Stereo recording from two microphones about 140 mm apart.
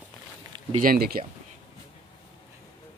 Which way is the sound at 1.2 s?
40° right (ahead or behind).